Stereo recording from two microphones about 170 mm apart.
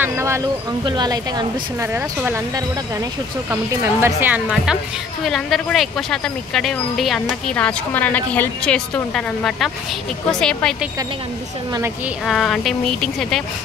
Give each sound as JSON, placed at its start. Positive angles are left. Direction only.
{"t": 0.0, "sound": "speech", "side_deg": -15}
{"t": 12.3, "sound": "speech", "side_deg": 0}